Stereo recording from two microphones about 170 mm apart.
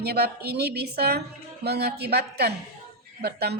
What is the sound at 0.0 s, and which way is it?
A woman's voice, 70° right (ahead or behind).